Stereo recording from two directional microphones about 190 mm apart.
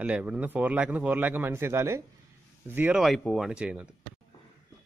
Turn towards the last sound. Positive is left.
turn(degrees=-5)  # may be behind; listen again after turning